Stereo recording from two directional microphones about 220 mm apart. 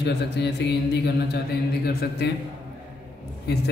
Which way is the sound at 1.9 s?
50° left (ahead or behind).